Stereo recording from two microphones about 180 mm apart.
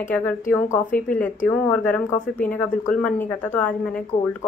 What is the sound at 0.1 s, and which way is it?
A woman's voice, 5° left (ahead or behind).